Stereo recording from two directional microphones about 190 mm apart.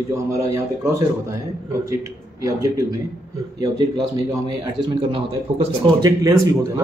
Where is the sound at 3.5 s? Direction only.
20° right (ahead or behind).